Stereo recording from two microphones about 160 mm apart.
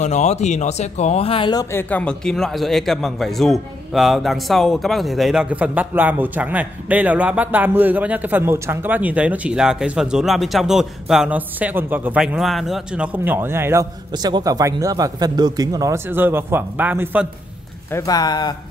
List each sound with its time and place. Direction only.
0.0 s speech: 45° left (ahead or behind); by 17.3 s 10° right (ahead or behind)
17.9 s speech: 25° left (ahead or behind)